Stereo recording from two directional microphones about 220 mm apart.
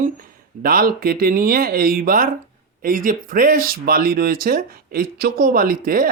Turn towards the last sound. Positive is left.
turn(degrees=-40)  # may be behind; listen again after turning